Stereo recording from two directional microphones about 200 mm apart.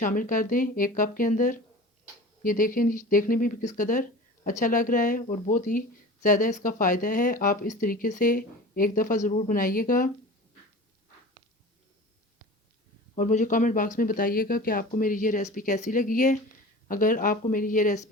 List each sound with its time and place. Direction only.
0.0 s speech: 40° left (ahead or behind)
13.1 s speech: 35° left (ahead or behind)